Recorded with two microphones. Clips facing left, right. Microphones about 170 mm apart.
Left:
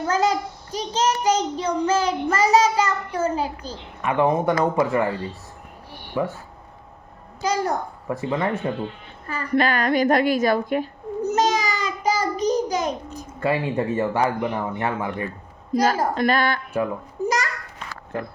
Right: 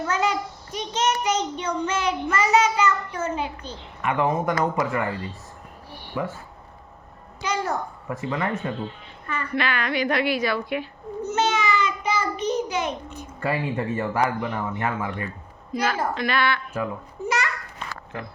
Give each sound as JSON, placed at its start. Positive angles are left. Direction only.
{"t": 0.0, "sound": "a child's voice", "side_deg": 35}
{"t": 6.2, "sound": "speech", "side_deg": 25}
{"t": 7.4, "sound": "a child's voice", "side_deg": 35}
{"t": 9.2, "sound": "a sound", "side_deg": 35}
{"t": 13.4, "sound": "a child's voice", "side_deg": 25}
{"t": 17.2, "sound": "a sound", "side_deg": 40}